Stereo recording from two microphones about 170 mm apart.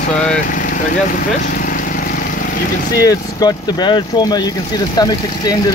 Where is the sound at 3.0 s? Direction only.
25° left (ahead or behind).